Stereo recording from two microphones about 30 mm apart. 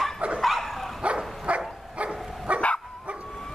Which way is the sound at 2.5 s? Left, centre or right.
Right.